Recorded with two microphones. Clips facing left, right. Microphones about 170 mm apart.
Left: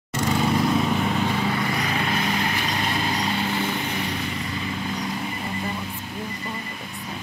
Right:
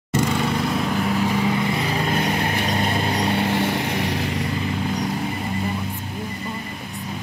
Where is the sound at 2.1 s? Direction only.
50° right (ahead or behind); by 4.5 s 75° right (ahead or behind).